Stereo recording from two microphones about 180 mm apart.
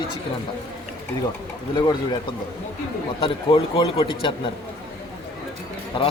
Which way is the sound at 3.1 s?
30° left (ahead or behind).